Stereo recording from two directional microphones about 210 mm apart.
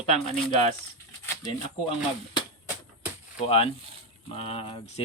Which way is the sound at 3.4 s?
25° left (ahead or behind).